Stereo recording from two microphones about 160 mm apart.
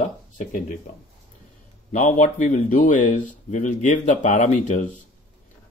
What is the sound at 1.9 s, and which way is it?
Speech, 55° left (ahead or behind).